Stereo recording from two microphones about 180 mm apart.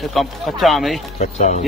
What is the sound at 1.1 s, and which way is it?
Speech, 40° left (ahead or behind).